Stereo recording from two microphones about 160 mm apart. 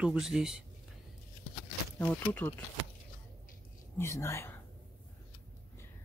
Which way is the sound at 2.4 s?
10° left (ahead or behind).